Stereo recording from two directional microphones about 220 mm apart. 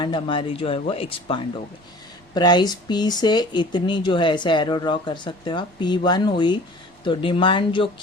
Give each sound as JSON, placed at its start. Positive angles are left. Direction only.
{"t": 0.0, "sound": "speech", "side_deg": 20}